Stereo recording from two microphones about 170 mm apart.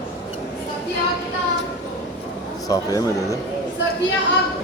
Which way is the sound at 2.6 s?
20° left (ahead or behind).